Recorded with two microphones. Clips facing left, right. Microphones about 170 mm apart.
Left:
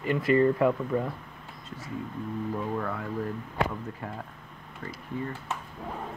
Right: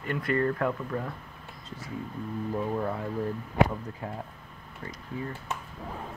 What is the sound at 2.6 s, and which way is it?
Speech, 15° right (ahead or behind).